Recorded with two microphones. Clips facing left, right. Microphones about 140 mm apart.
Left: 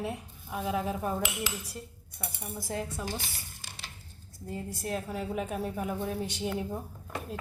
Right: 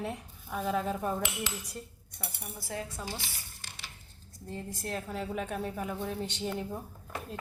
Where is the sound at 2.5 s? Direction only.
20° left (ahead or behind).